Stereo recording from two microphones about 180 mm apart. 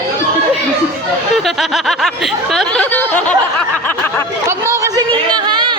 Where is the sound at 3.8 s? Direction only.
10° left (ahead or behind).